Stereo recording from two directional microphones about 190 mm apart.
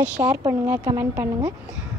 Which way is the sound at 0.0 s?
10° right (ahead or behind).